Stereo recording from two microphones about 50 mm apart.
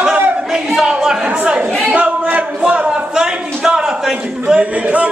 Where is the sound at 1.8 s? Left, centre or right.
Right.